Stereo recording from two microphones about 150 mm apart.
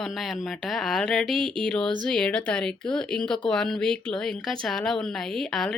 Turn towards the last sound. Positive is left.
turn(degrees=5)  # may be behind; listen again after turning